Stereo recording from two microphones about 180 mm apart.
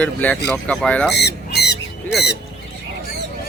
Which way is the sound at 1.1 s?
65° left (ahead or behind).